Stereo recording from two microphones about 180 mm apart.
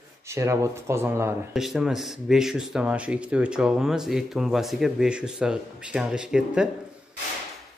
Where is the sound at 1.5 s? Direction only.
Centre (ahead or behind).